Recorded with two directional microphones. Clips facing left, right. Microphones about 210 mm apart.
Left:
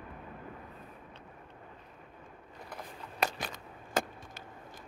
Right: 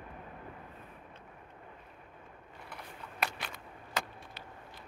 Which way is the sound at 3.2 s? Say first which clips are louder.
Left 4 dB; 45° left (ahead or behind).